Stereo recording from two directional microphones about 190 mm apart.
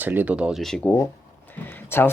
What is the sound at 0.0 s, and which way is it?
Speech, 10° right (ahead or behind).